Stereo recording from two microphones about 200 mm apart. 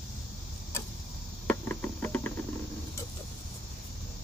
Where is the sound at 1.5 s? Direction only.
10° left (ahead or behind).